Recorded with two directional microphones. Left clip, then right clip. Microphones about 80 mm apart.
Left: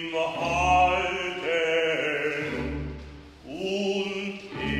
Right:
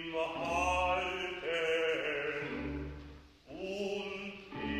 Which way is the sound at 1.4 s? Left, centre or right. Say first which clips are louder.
Left 8 dB; left.